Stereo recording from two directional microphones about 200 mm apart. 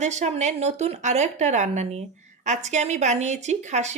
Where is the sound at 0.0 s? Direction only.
35° right (ahead or behind).